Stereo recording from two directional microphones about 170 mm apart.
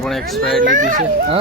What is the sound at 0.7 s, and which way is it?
Speech, 50° right (ahead or behind).